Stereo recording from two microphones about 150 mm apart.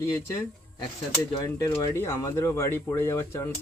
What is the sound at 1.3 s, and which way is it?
A man's voice, 25° left (ahead or behind).